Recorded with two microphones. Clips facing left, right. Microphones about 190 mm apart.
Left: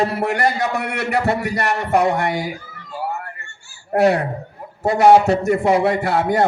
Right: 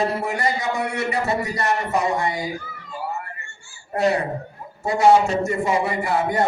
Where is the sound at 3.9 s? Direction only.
65° left (ahead or behind).